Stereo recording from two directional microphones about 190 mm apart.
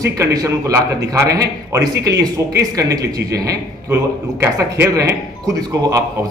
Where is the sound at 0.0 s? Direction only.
15° right (ahead or behind).